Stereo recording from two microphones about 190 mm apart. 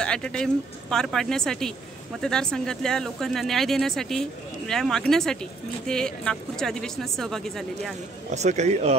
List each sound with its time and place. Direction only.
0.0 s speech: 5° left (ahead or behind)
8.3 s a man's voice: 40° right (ahead or behind)